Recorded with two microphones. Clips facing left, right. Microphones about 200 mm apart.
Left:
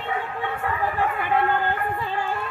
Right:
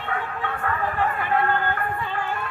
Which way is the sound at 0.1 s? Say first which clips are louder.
Even; 15° left (ahead or behind).